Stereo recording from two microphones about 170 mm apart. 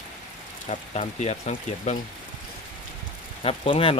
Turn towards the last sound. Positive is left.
turn(degrees=35)  # may be behind; listen again after turning